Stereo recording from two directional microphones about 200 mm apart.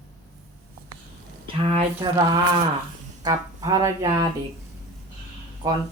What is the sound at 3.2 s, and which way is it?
Speech, 20° right (ahead or behind).